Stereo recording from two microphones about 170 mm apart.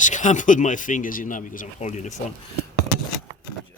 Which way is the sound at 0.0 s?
45° left (ahead or behind).